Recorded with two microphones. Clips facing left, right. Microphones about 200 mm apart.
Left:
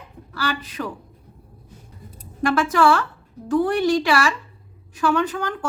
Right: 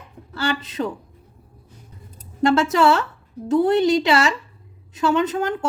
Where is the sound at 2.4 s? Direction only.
25° right (ahead or behind).